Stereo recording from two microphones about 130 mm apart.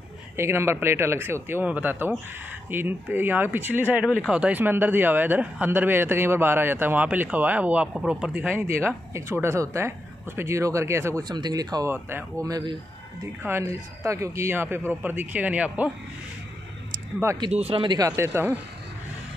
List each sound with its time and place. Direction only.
0.4 s speech: 20° right (ahead or behind)
11.9 s speech: 15° right (ahead or behind)
12.4 s a man's voice: 30° right (ahead or behind); by 15.9 s 10° right (ahead or behind)
17.5 s speech: 50° right (ahead or behind)
17.9 s speech: 25° right (ahead or behind)